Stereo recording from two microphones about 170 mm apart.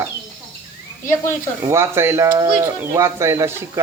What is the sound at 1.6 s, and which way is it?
Speech, 15° right (ahead or behind).